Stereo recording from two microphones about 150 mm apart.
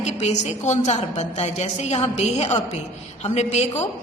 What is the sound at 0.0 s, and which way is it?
A woman's voice, 45° left (ahead or behind).